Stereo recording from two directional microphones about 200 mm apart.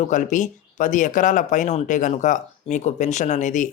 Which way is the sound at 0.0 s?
40° left (ahead or behind).